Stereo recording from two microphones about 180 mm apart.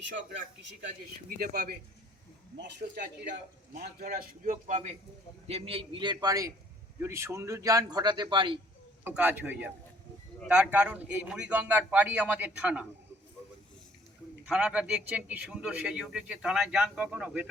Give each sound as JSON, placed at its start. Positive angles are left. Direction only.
{"t": 1.4, "sound": "speech", "side_deg": -60}
{"t": 2.6, "sound": "a man's voice", "side_deg": -70}
{"t": 9.0, "sound": "a man's voice", "side_deg": -10}
{"t": 14.4, "sound": "a man's voice", "side_deg": -5}